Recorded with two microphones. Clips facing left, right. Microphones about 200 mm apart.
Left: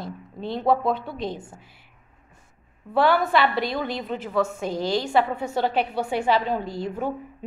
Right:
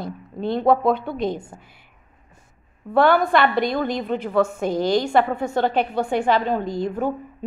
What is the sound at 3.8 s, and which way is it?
Speech, 45° right (ahead or behind).